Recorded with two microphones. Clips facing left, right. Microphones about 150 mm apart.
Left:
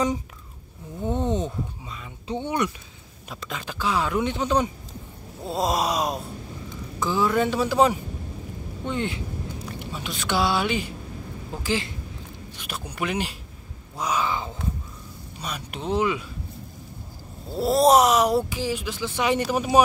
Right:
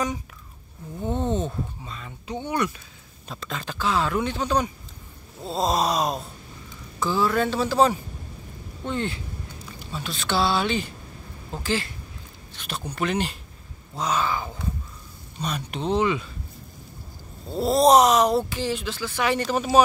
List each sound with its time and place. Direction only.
1.1 s speech: 15° left (ahead or behind)
2.2 s speech: 25° left (ahead or behind)
15.4 s speech: 5° left (ahead or behind)
17.5 s speech: 5° left (ahead or behind)